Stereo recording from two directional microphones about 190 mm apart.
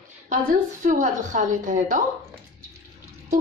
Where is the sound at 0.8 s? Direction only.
45° right (ahead or behind).